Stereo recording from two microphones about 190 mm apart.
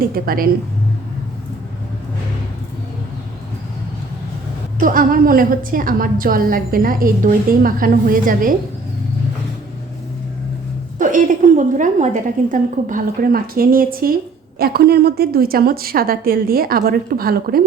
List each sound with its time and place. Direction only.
0.0 s a woman's voice: 50° right (ahead or behind)
4.8 s a woman's voice: 45° right (ahead or behind)
10.9 s a woman's voice: 45° right (ahead or behind)